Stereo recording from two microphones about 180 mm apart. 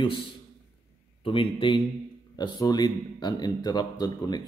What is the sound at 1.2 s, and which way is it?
Speech, 30° left (ahead or behind).